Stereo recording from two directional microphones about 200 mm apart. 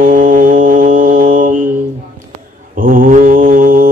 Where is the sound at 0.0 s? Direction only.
40° right (ahead or behind).